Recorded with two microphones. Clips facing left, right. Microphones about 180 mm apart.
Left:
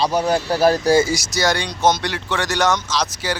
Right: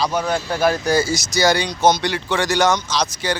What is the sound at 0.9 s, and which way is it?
Speech, 15° left (ahead or behind).